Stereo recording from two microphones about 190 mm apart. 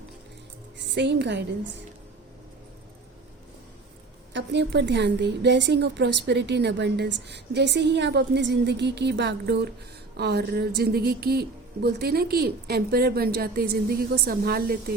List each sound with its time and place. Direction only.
0.8 s a woman's voice: 65° right (ahead or behind)
4.4 s a woman's voice: 65° right (ahead or behind)